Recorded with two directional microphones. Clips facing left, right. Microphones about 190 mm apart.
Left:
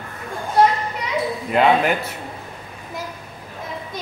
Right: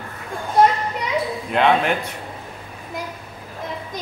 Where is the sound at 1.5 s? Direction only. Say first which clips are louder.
Left 1 dB; 5° left (ahead or behind).